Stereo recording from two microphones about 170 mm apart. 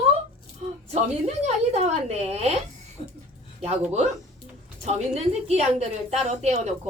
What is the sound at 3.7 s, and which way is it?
A woman's voice, 40° right (ahead or behind).